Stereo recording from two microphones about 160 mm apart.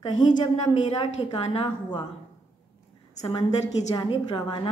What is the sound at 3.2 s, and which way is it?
A woman's voice, 30° left (ahead or behind).